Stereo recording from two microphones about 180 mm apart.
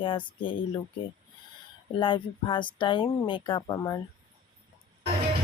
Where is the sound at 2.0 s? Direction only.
30° left (ahead or behind).